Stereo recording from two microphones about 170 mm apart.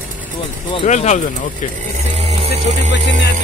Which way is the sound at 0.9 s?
45° left (ahead or behind).